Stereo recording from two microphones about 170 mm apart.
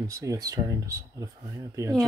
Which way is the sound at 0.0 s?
20° right (ahead or behind).